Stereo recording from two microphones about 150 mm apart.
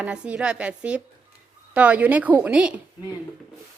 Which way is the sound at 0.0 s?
10° right (ahead or behind).